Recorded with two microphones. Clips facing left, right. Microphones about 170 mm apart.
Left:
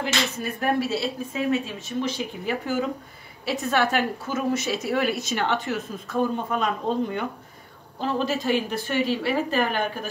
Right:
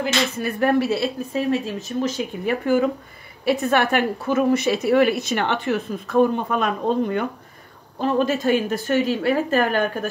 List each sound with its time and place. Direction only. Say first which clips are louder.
0.4 s speech: right 6 dB; 70° right (ahead or behind)
1.3 s speech: right 2 dB; 35° right (ahead or behind)
2.4 s a woman's voice: right 7 dB; 60° right (ahead or behind)